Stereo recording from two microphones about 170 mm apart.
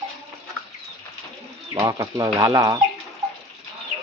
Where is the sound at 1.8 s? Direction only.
20° right (ahead or behind).